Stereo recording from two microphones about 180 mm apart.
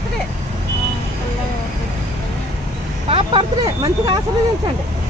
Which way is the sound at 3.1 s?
30° right (ahead or behind).